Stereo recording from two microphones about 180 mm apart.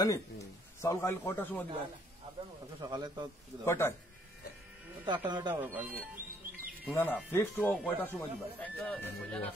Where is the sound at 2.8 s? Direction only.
25° right (ahead or behind).